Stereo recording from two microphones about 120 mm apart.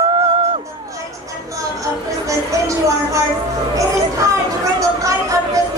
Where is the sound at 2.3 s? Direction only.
25° right (ahead or behind).